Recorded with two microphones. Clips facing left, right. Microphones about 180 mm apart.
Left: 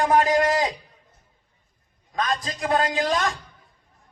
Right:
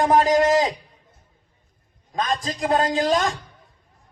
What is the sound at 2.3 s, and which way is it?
Speech, 45° right (ahead or behind).